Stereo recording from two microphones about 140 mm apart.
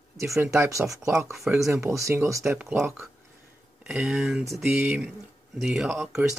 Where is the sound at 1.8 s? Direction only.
20° right (ahead or behind).